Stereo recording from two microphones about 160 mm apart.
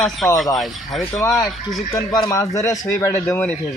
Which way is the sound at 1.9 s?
20° left (ahead or behind).